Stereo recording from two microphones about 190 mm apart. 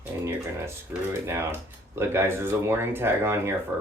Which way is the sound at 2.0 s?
10° right (ahead or behind).